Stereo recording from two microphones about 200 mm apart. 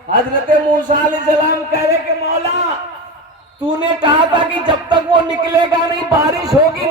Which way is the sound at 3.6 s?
25° right (ahead or behind).